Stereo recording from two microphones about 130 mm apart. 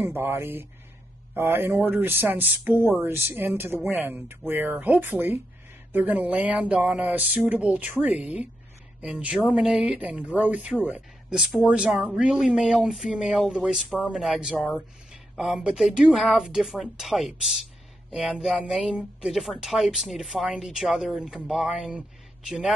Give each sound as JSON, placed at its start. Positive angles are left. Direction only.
{"t": 0.0, "sound": "speech", "side_deg": -15}
{"t": 18.7, "sound": "speech", "side_deg": -5}